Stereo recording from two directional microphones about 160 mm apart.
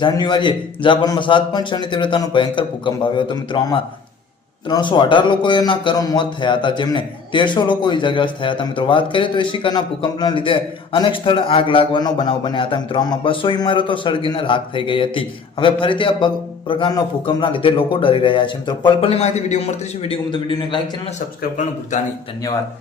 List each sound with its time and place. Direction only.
0.0 s a man's voice: 30° left (ahead or behind)